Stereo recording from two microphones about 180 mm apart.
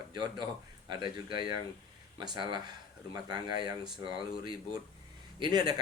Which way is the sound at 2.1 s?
25° right (ahead or behind).